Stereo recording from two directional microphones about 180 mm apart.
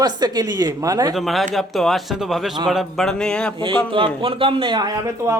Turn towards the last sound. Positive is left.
turn(degrees=-20)  # may be behind; listen again after turning